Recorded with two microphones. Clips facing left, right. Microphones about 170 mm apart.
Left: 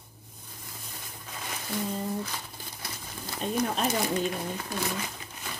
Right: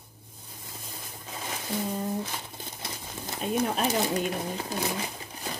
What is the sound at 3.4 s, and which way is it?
Speech, 5° right (ahead or behind).